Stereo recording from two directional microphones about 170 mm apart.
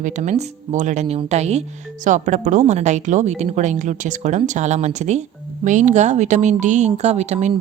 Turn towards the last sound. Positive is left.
turn(degrees=-45)  # may be behind; listen again after turning